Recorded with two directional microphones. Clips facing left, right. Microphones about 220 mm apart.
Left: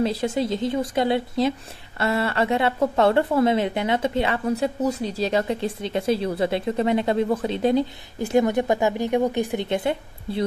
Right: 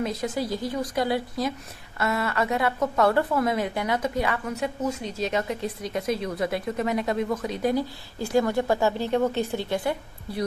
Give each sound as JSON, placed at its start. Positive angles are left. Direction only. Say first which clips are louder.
{"t": 0.0, "sound": "speech", "louder": "left 5 dB", "side_deg": 30}